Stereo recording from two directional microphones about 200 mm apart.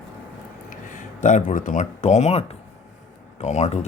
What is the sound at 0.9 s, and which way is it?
Speech, 40° left (ahead or behind).